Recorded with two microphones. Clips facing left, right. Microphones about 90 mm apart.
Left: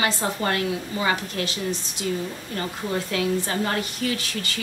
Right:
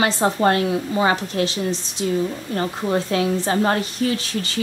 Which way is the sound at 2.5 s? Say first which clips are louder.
Right 6 dB; 35° right (ahead or behind).